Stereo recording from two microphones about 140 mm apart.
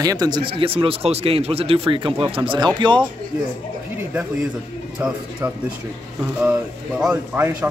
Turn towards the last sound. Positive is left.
turn(degrees=-10)  # may be behind; listen again after turning